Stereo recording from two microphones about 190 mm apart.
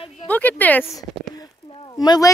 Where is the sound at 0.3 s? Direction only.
10° left (ahead or behind).